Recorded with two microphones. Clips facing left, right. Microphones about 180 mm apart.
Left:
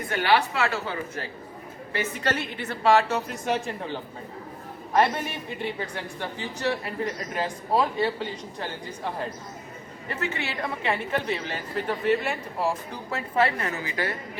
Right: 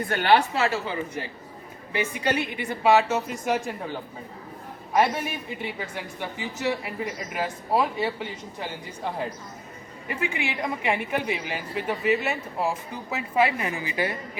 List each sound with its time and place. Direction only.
0.2 s a woman's voice: 35° right (ahead or behind)
0.5 s a woman's voice: 20° right (ahead or behind); by 3.8 s 5° right (ahead or behind)
4.9 s a woman's voice: 10° right (ahead or behind)
10.1 s a woman's voice: 10° right (ahead or behind)